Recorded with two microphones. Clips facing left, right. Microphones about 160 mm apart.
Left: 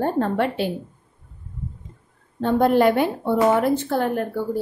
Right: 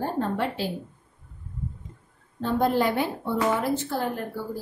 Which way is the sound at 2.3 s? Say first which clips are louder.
Left 6 dB; 60° left (ahead or behind).